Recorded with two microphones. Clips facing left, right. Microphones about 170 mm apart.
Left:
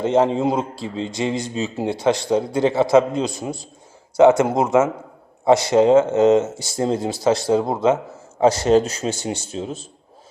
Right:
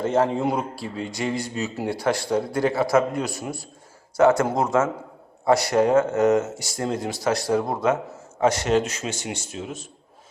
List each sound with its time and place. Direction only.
0.0 s a man's voice: 20° left (ahead or behind)